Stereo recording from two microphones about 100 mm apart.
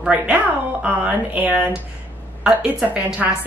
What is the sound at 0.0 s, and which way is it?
Speech, 10° right (ahead or behind).